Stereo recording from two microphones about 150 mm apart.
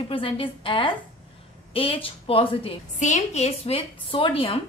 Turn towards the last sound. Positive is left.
turn(degrees=35)  # may be behind; listen again after turning